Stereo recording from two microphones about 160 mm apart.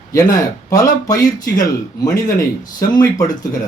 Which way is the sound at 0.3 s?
20° left (ahead or behind).